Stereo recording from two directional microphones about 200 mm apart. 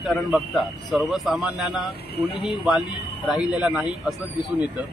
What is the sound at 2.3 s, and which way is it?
Speech, 25° left (ahead or behind).